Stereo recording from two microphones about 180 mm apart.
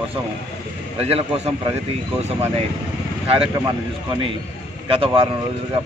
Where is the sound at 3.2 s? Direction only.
30° right (ahead or behind).